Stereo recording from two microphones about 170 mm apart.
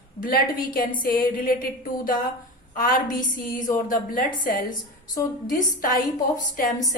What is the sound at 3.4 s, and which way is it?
A woman's voice, 55° left (ahead or behind).